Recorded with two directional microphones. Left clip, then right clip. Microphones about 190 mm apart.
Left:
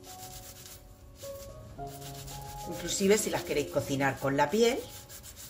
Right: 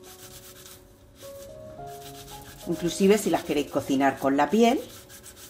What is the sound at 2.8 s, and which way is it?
Speech, 30° right (ahead or behind).